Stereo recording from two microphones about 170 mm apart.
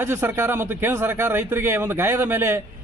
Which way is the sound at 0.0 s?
15° right (ahead or behind).